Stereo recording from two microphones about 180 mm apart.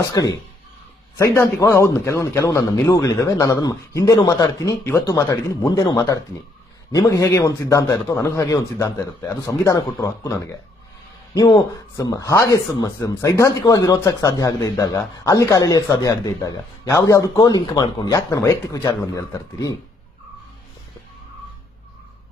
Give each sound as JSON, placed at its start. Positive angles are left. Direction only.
{"t": 0.0, "sound": "a man's voice", "side_deg": 20}